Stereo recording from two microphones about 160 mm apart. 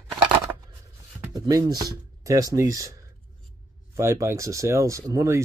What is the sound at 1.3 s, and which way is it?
Speech, 25° right (ahead or behind).